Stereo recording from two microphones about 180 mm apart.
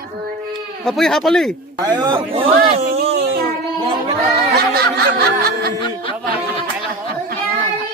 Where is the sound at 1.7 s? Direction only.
25° right (ahead or behind).